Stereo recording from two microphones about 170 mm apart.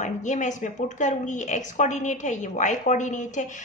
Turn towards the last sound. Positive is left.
turn(degrees=45)  # may be behind; listen again after turning